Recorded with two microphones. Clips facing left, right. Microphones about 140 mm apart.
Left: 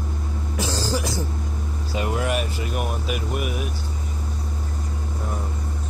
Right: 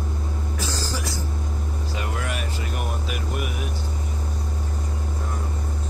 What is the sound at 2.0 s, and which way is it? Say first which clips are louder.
Speech: left 8 dB; 20° left (ahead or behind).